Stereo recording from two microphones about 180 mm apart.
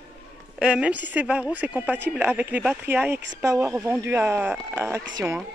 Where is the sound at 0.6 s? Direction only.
5° right (ahead or behind).